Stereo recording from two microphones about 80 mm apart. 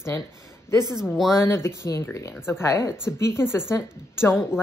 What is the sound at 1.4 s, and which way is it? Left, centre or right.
A woman's voice, left.